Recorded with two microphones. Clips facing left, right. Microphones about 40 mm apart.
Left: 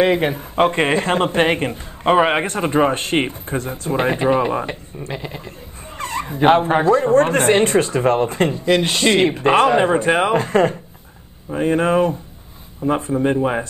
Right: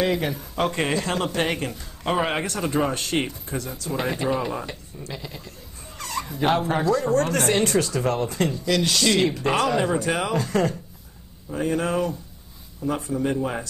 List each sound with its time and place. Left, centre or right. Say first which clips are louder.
0.0 s speech: left 7 dB; left